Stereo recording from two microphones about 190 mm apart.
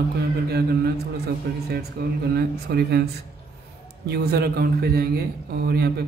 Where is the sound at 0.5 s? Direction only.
55° right (ahead or behind).